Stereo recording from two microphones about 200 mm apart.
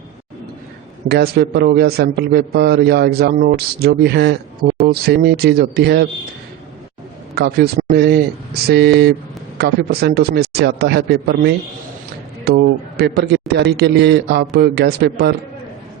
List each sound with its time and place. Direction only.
1.0 s a man's voice: 55° right (ahead or behind)
7.3 s a man's voice: 50° right (ahead or behind)